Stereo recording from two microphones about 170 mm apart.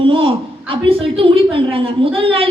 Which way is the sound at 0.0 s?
30° right (ahead or behind).